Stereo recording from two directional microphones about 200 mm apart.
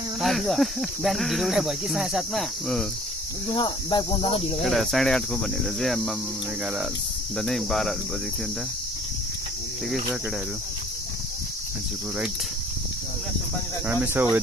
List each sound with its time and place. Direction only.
0.2 s cricket: centre (ahead or behind)
3.5 s speech: 25° left (ahead or behind)
4.6 s cricket: centre (ahead or behind)
7.3 s cricket: centre (ahead or behind)
13.8 s speech: 10° right (ahead or behind)